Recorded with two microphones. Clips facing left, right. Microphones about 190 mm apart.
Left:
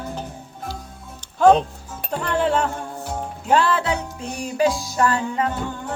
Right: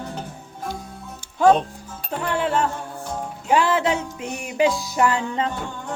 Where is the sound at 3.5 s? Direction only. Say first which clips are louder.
Even; 15° right (ahead or behind).